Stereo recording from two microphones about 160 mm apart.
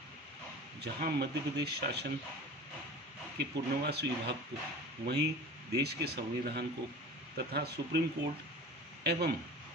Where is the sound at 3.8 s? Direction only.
90° right.